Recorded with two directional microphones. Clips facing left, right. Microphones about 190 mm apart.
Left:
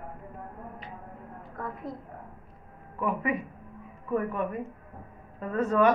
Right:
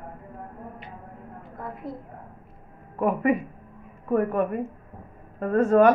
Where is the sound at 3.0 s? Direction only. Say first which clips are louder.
Right 7 dB; 50° right (ahead or behind).